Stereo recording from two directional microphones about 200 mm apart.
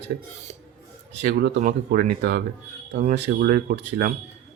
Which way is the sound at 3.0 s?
35° right (ahead or behind).